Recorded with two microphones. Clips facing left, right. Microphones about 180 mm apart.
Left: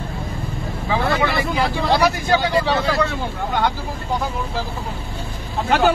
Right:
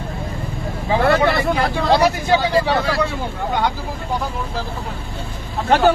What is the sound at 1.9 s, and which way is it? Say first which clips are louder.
Speech: right 3 dB; 30° right (ahead or behind).